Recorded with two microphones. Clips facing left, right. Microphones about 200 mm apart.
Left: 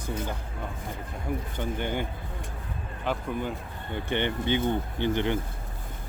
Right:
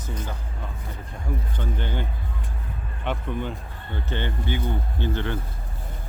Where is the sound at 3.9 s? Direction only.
20° left (ahead or behind).